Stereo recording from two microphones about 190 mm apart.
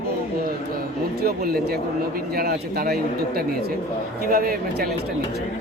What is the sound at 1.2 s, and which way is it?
A man's voice, 55° right (ahead or behind).